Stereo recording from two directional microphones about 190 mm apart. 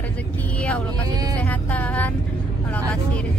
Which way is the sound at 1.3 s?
10° left (ahead or behind).